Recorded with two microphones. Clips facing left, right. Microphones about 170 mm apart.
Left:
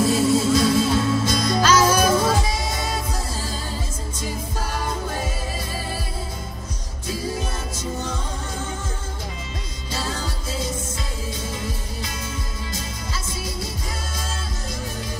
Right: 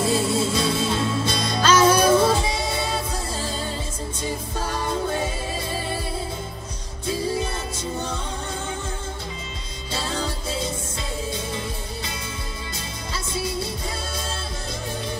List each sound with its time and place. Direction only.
0.0 s music: 30° right (ahead or behind)